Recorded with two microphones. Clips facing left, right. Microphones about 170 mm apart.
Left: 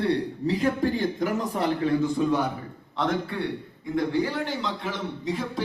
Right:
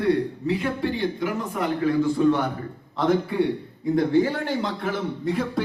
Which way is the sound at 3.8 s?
40° right (ahead or behind).